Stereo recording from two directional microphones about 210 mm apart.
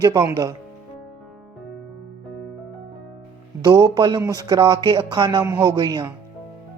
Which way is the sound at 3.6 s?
20° right (ahead or behind).